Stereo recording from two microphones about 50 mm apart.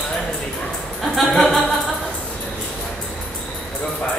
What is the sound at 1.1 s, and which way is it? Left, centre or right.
Music, centre.